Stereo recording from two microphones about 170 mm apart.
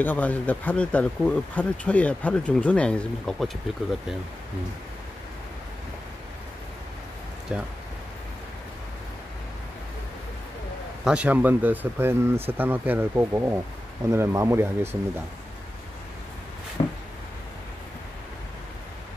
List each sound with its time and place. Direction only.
0.0 s speech: 10° left (ahead or behind)
7.5 s speech: 5° right (ahead or behind)
11.1 s speech: 10° right (ahead or behind)
16.8 s a sound: 30° left (ahead or behind)